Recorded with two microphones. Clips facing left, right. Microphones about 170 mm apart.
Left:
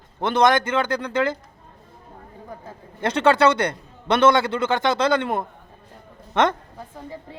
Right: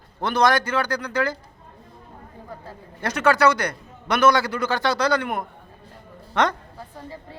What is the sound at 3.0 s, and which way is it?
A man's voice, 25° left (ahead or behind).